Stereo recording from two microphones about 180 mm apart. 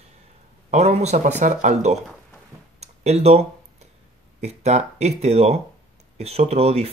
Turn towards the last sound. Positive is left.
turn(degrees=-35)  # may be behind; listen again after turning